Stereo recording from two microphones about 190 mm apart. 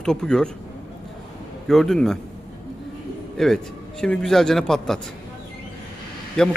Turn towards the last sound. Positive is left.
turn(degrees=5)  # may be behind; listen again after turning